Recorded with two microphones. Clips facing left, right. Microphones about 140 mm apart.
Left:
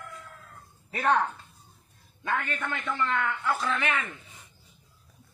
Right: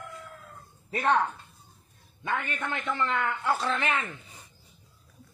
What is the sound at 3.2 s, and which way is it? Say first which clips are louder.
Speech: right 1 dB; 30° right (ahead or behind).